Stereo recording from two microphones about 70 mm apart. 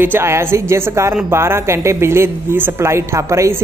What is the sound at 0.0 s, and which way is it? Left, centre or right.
A woman's voice, right.